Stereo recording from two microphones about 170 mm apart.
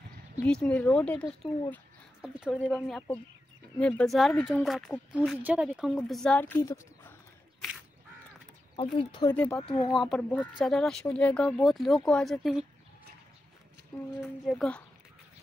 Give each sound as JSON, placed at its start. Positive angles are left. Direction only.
{"t": 0.5, "sound": "speech", "side_deg": 5}
{"t": 2.5, "sound": "speech", "side_deg": 10}
{"t": 6.7, "sound": "a sound", "side_deg": 15}
{"t": 8.7, "sound": "speech", "side_deg": 25}
{"t": 9.3, "sound": "speech", "side_deg": 10}
{"t": 9.6, "sound": "speech", "side_deg": 35}
{"t": 9.9, "sound": "speech", "side_deg": 5}
{"t": 14.4, "sound": "speech", "side_deg": 0}